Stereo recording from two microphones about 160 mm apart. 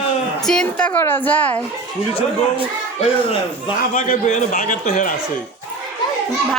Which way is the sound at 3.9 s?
50° left (ahead or behind).